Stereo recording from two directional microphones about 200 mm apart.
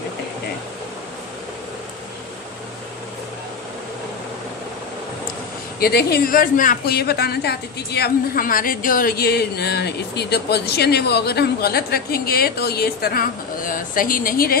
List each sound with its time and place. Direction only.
5.8 s speech: 50° left (ahead or behind)